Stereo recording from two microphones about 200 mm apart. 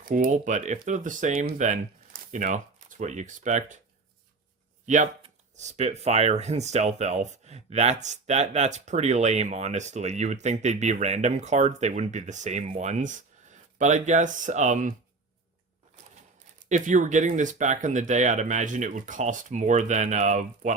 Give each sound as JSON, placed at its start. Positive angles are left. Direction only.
{"t": 0.0, "sound": "speech", "side_deg": -40}
{"t": 4.9, "sound": "speech", "side_deg": -35}
{"t": 16.6, "sound": "speech", "side_deg": -40}